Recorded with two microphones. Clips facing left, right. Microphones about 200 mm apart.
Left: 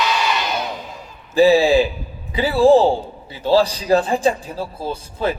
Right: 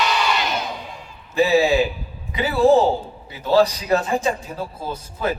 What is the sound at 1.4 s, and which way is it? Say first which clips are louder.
A man's voice: left 4 dB; 30° left (ahead or behind).